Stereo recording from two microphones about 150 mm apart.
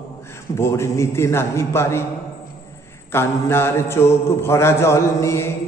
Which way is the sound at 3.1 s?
15° left (ahead or behind).